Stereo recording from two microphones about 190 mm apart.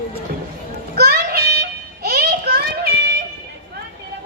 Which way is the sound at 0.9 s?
55° right (ahead or behind).